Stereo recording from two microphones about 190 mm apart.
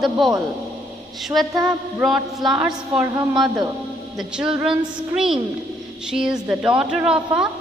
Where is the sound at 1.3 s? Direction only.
Centre (ahead or behind).